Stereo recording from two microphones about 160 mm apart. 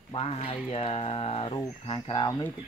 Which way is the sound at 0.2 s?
40° left (ahead or behind).